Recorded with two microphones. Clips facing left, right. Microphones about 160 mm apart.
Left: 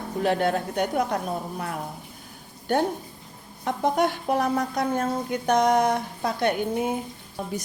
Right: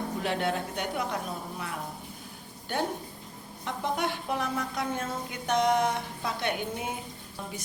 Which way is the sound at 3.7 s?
45° left (ahead or behind).